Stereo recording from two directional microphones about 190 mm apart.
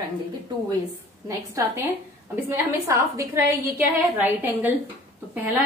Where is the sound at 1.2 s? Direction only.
15° right (ahead or behind).